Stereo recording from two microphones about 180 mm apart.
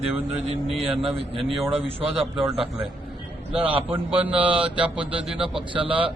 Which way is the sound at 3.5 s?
30° right (ahead or behind).